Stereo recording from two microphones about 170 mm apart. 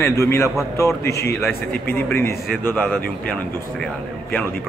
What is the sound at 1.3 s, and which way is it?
A man's voice, 10° left (ahead or behind).